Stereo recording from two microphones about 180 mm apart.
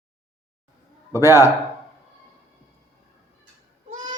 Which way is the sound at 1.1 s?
15° right (ahead or behind).